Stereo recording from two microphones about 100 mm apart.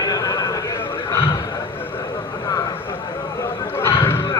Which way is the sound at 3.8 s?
25° left (ahead or behind).